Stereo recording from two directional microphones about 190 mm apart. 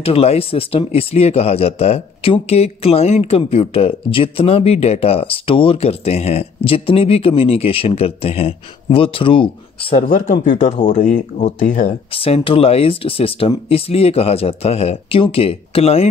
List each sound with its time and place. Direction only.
0.0 s speech: 30° left (ahead or behind)
10.0 s speech: 45° left (ahead or behind)
10.3 s speech: 30° left (ahead or behind)
11.0 s speech: 40° left (ahead or behind)
12.1 s speech: 30° left (ahead or behind)